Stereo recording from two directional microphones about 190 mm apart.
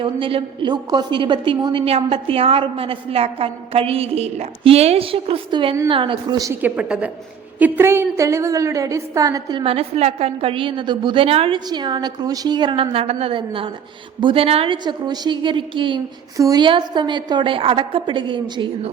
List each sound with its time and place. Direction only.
0.0 s a woman's voice: 30° right (ahead or behind)